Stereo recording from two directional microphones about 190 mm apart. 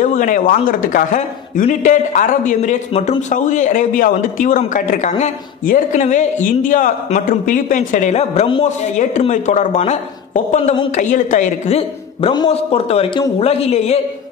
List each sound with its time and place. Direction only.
0.0 s a man's voice: 40° left (ahead or behind)